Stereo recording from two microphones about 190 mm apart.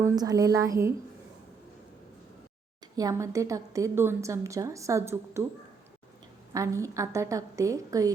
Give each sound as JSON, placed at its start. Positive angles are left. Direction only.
{"t": 0.0, "sound": "a woman's voice", "side_deg": -20}
{"t": 2.9, "sound": "a woman's voice", "side_deg": -20}
{"t": 6.5, "sound": "a woman's voice", "side_deg": -15}